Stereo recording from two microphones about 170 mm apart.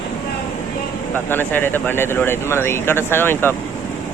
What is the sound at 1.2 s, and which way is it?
Speech, 10° left (ahead or behind).